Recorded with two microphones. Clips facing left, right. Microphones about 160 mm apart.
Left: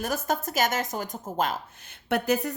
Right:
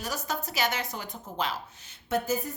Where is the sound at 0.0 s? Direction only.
50° left (ahead or behind).